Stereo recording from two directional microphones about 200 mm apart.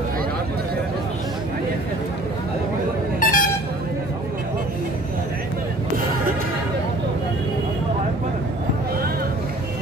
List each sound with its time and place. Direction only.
3.2 s air horn: 45° left (ahead or behind)